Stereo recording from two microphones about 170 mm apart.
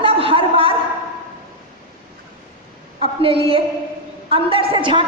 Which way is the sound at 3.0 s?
30° right (ahead or behind).